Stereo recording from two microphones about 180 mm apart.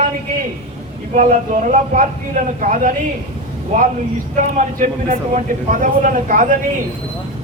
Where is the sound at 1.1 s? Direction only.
45° right (ahead or behind).